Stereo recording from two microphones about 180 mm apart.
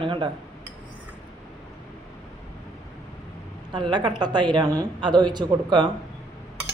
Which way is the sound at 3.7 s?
25° right (ahead or behind).